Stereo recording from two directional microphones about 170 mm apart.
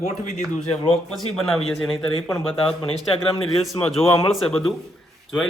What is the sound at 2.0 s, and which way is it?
Speech, 30° left (ahead or behind).